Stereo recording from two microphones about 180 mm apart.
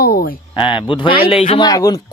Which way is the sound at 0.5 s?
30° left (ahead or behind).